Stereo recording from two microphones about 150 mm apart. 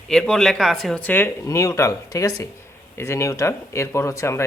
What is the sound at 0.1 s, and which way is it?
Speech, 5° left (ahead or behind).